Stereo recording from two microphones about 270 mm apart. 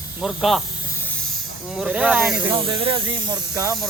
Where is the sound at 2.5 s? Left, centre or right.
Centre.